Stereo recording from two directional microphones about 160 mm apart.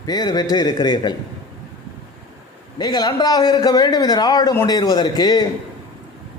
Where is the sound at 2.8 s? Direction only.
25° left (ahead or behind).